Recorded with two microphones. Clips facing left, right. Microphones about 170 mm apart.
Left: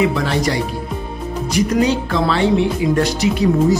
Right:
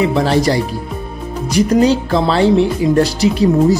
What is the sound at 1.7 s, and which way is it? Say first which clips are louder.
Speech: right 6 dB; 35° right (ahead or behind).